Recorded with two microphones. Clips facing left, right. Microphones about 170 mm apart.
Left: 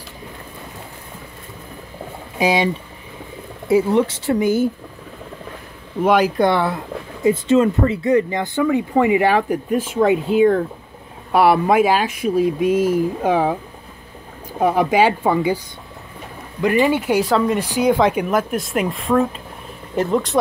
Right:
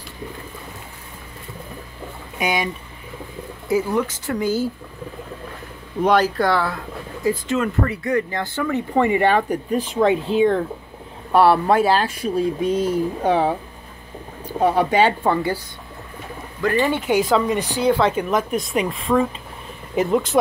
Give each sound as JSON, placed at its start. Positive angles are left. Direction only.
{"t": 2.3, "sound": "speech", "side_deg": 30}
{"t": 6.0, "sound": "speech", "side_deg": 10}
{"t": 14.6, "sound": "speech", "side_deg": 10}
{"t": 16.6, "sound": "speech", "side_deg": 10}
{"t": 17.7, "sound": "speech", "side_deg": 15}